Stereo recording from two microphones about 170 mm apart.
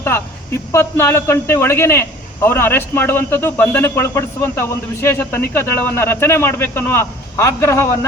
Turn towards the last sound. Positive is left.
turn(degrees=15)  # may be behind; listen again after turning